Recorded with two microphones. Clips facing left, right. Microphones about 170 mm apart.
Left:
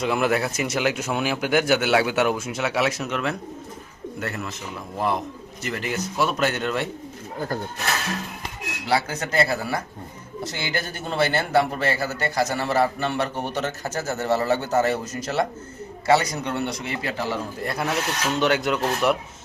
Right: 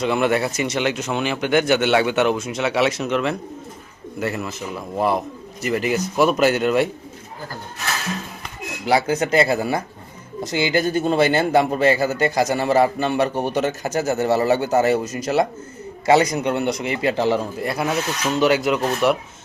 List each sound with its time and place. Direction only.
0.0 s speech: centre (ahead or behind)
5.6 s speech: 10° right (ahead or behind)
8.9 s speech: 15° right (ahead or behind)
17.6 s speech: 5° right (ahead or behind)